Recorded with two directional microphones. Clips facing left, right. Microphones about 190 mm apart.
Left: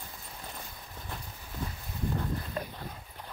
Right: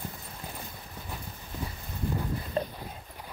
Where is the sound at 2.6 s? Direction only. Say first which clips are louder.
Right 10 dB; 30° right (ahead or behind).